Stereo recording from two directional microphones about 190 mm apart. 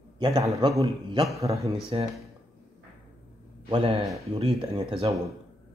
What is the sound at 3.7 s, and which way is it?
A man's voice, 25° right (ahead or behind).